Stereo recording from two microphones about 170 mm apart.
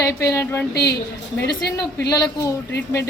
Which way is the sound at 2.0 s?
20° left (ahead or behind).